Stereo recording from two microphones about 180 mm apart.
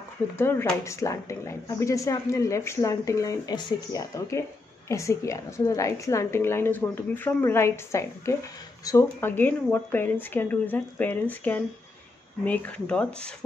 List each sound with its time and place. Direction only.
0.4 s speech: 10° left (ahead or behind)